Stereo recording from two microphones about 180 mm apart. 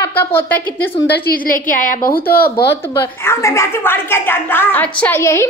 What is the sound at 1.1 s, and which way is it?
A woman's voice, 55° left (ahead or behind).